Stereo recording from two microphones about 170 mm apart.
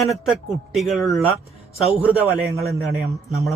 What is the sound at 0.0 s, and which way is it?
A man's voice, centre (ahead or behind).